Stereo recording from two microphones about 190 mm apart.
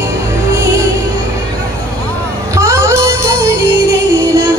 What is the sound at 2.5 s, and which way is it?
Music, 15° right (ahead or behind).